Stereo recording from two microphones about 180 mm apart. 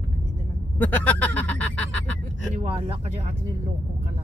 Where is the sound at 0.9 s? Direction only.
10° left (ahead or behind).